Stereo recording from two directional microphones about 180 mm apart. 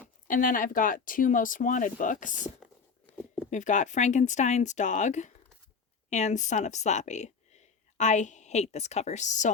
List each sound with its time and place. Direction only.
0.3 s speech: 50° left (ahead or behind)
3.5 s speech: 45° left (ahead or behind)